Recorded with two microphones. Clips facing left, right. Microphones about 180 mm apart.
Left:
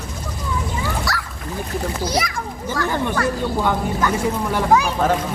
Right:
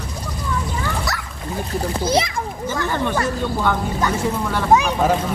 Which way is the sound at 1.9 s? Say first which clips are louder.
Right 5 dB; 25° right (ahead or behind).